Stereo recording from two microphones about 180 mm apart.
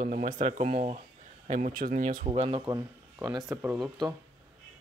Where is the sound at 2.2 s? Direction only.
35° right (ahead or behind).